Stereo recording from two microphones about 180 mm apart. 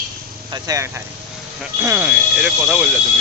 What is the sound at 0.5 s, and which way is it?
Speech, 20° right (ahead or behind).